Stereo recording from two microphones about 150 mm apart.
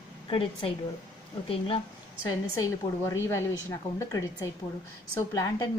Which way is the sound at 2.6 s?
20° left (ahead or behind).